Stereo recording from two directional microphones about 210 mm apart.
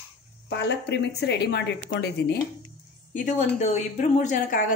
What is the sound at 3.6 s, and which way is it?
Speech, 35° left (ahead or behind).